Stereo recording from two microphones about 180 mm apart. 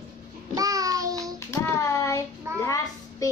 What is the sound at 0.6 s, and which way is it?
Child singing, 20° right (ahead or behind).